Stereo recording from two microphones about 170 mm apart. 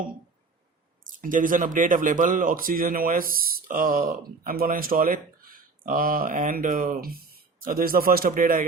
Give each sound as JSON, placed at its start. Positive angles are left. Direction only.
{"t": 1.0, "sound": "speech", "side_deg": -50}